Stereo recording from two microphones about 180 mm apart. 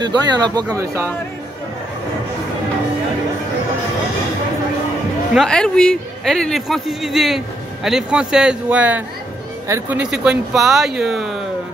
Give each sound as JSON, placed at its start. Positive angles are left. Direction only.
{"t": 0.0, "sound": "speech", "side_deg": -25}
{"t": 5.3, "sound": "a man's voice", "side_deg": 0}